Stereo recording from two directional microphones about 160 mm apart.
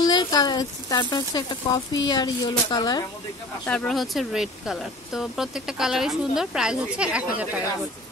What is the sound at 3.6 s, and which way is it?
Speech, 5° left (ahead or behind).